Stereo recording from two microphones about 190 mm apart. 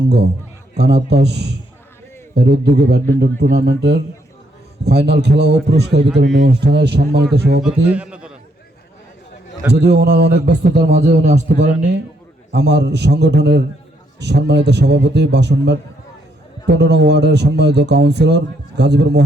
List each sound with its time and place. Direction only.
0.7 s a man's voice: 60° right (ahead or behind)
7.9 s a man's voice: 5° right (ahead or behind)
9.7 s a man's voice: 65° right (ahead or behind)
11.0 s a man's voice: 35° right (ahead or behind)
12.5 s a man's voice: 65° right (ahead or behind)